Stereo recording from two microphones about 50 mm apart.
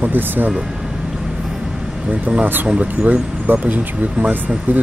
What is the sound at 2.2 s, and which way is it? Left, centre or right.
Speech, right.